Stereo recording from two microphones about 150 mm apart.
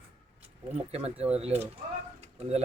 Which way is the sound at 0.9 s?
45° right (ahead or behind).